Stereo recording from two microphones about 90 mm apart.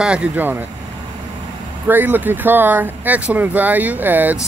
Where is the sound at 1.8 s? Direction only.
20° right (ahead or behind).